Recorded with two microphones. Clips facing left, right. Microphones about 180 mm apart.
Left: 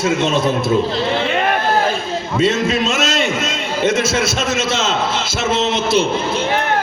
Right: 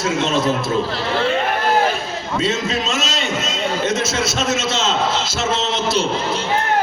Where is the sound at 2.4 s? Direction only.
55° left (ahead or behind).